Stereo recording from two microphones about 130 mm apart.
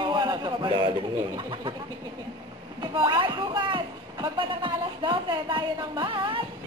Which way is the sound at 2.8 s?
40° right (ahead or behind).